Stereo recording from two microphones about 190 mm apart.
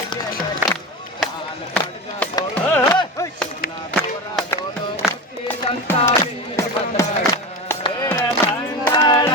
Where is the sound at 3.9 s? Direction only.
10° left (ahead or behind).